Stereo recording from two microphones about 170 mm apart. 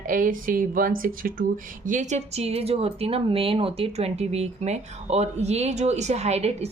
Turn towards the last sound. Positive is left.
turn(degrees=-40)  # may be behind; listen again after turning